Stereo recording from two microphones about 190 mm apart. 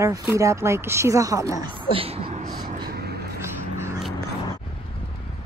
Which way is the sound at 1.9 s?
30° right (ahead or behind).